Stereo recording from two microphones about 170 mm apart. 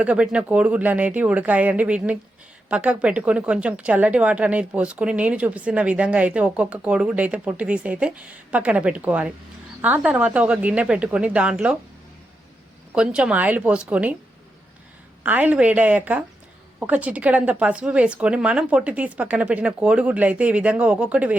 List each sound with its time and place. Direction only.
0.0 s speech: 5° right (ahead or behind)
12.9 s speech: 5° right (ahead or behind)
15.2 s speech: 10° right (ahead or behind)